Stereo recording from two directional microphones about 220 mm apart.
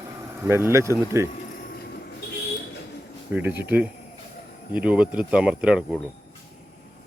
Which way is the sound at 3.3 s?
10° right (ahead or behind).